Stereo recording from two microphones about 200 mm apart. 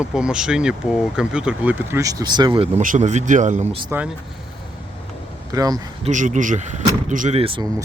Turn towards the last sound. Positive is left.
turn(degrees=-25)  # may be behind; listen again after turning